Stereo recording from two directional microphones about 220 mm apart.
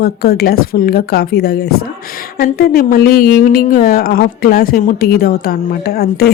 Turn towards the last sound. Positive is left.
turn(degrees=45)  # may be behind; listen again after turning